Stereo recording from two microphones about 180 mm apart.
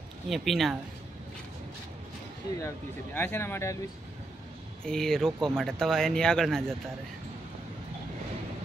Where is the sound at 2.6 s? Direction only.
15° left (ahead or behind).